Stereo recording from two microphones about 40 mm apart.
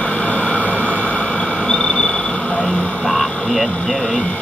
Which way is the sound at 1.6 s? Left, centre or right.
Left.